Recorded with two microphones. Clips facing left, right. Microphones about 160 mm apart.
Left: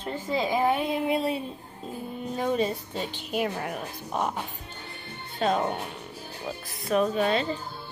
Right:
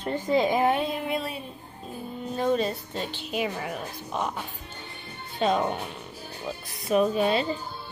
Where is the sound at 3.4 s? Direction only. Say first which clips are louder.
Left 1 dB; centre (ahead or behind).